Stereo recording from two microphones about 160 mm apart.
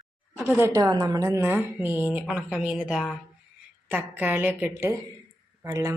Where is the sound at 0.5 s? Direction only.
15° right (ahead or behind).